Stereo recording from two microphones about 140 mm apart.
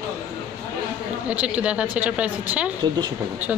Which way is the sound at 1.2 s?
10° right (ahead or behind).